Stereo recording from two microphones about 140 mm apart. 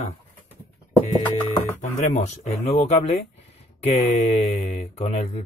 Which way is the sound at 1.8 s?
55° left (ahead or behind).